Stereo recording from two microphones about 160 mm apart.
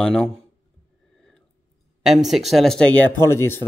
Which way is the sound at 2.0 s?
Centre (ahead or behind).